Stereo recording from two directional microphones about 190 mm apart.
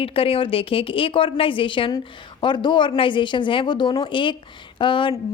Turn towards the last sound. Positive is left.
turn(degrees=25)  # may be behind; listen again after turning